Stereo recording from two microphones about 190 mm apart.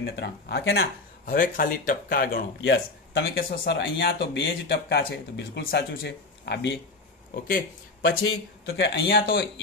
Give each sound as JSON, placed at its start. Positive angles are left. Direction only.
{"t": 0.0, "sound": "speech", "side_deg": 60}
{"t": 7.4, "sound": "speech", "side_deg": 50}
{"t": 8.1, "sound": "speech", "side_deg": 90}
{"t": 8.6, "sound": "speech", "side_deg": 60}